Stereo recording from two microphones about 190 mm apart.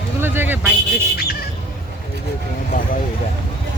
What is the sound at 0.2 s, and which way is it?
Speech, 10° right (ahead or behind).